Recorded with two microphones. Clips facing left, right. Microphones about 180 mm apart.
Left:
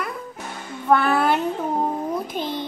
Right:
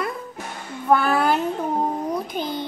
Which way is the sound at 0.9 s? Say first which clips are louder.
Even; centre (ahead or behind).